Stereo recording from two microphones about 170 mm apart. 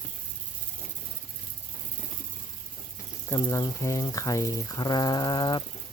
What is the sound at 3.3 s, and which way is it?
Speech, 20° left (ahead or behind).